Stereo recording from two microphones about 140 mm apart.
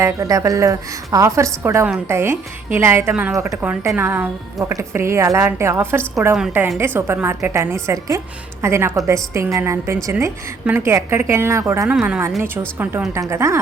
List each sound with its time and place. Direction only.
0.0 s a woman's voice: 25° right (ahead or behind)
3.3 s a woman's voice: 25° right (ahead or behind)
3.6 s a woman's voice: 10° right (ahead or behind)
11.9 s a woman's voice: 10° right (ahead or behind)